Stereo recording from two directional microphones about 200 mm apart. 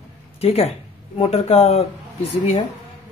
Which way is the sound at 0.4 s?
30° left (ahead or behind).